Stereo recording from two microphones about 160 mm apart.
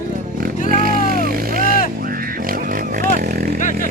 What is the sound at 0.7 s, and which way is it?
Vehicle, 65° right (ahead or behind).